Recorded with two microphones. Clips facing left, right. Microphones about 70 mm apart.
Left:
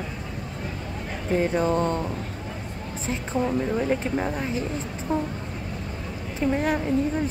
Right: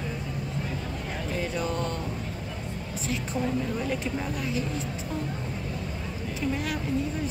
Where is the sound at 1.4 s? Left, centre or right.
Left.